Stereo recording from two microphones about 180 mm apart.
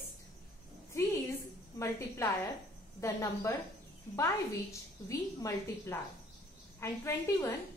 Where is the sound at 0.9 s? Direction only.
15° left (ahead or behind).